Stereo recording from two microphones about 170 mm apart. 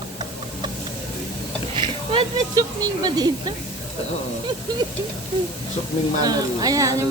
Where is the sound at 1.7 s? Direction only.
30° right (ahead or behind).